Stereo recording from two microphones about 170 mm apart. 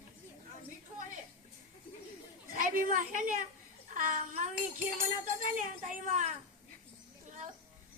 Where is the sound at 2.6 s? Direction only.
55° right (ahead or behind).